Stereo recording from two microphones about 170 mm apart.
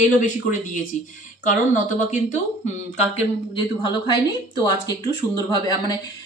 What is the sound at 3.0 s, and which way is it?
Speech, 35° left (ahead or behind).